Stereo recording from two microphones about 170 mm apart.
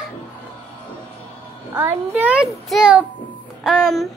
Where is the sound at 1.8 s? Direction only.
10° right (ahead or behind).